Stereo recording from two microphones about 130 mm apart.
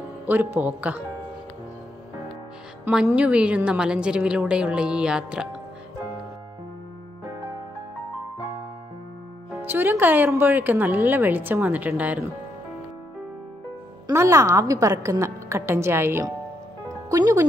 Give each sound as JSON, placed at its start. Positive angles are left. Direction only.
{"t": 0.3, "sound": "a woman's voice", "side_deg": -15}
{"t": 2.8, "sound": "a woman's voice", "side_deg": -5}
{"t": 9.7, "sound": "a woman's voice", "side_deg": -15}
{"t": 14.0, "sound": "a woman's voice", "side_deg": -25}